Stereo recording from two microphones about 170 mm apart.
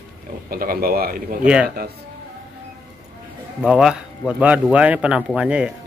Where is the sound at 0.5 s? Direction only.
60° right (ahead or behind).